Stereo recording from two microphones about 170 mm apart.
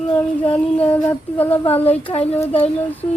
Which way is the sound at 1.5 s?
35° left (ahead or behind).